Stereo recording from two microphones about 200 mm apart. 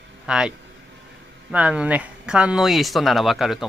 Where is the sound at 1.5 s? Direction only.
5° right (ahead or behind).